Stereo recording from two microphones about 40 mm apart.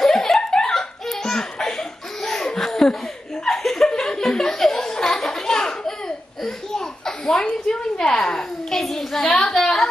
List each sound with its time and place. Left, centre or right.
0.0 s giggle: centre
1.3 s laughter: centre
8.0 s a woman's voice: centre